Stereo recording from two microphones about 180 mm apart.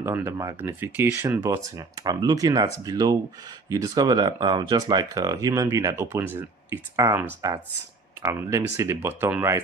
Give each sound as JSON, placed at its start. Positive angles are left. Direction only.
{"t": 0.0, "sound": "speech", "side_deg": -15}